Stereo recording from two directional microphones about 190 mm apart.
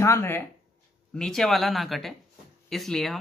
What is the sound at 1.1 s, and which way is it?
Speech, 5° left (ahead or behind).